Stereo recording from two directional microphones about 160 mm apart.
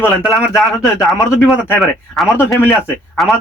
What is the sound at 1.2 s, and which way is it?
Speech, 15° left (ahead or behind).